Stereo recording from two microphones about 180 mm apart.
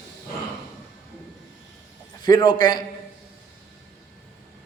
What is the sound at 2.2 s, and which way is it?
Speech, 25° left (ahead or behind).